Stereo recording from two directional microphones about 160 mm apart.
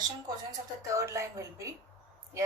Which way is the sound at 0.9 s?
20° right (ahead or behind).